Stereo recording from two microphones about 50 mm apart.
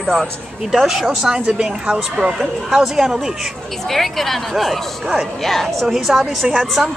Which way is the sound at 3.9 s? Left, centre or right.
Centre.